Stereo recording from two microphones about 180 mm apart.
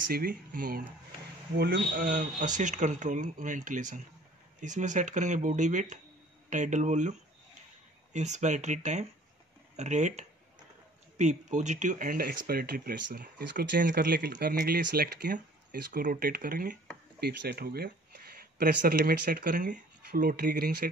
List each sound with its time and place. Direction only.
0.1 s speech: 50° right (ahead or behind)
17.2 s speech: 65° right (ahead or behind)